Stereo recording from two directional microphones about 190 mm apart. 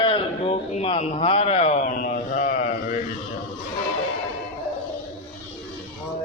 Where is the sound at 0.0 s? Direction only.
30° left (ahead or behind).